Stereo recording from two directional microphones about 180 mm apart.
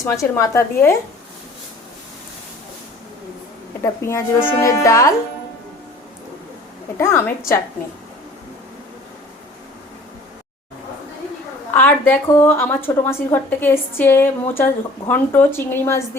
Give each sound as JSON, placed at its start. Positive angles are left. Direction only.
{"t": 0.0, "sound": "a woman's voice", "side_deg": 15}
{"t": 4.0, "sound": "a woman's voice", "side_deg": 15}
{"t": 7.0, "sound": "a woman's voice", "side_deg": 15}
{"t": 11.7, "sound": "a woman's voice", "side_deg": 10}